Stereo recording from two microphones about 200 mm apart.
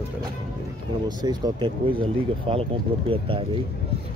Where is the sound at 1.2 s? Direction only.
20° right (ahead or behind).